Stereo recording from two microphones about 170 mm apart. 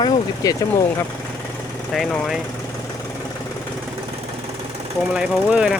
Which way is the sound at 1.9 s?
Centre (ahead or behind).